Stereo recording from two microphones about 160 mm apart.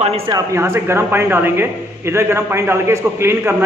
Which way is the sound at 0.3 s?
15° right (ahead or behind).